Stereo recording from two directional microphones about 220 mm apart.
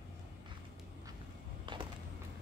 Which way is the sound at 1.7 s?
20° right (ahead or behind).